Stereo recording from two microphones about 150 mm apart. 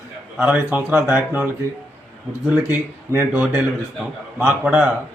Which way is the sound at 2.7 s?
10° right (ahead or behind).